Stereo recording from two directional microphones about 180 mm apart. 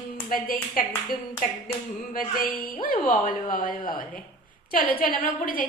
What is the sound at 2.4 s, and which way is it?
Speech, 50° left (ahead or behind).